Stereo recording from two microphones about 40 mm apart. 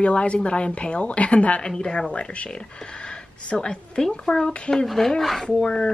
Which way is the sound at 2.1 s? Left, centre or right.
Left.